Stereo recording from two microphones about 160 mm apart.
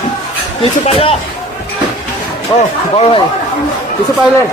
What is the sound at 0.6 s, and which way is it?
Speech, 35° left (ahead or behind).